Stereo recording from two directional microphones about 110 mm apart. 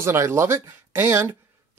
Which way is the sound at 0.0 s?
25° right (ahead or behind).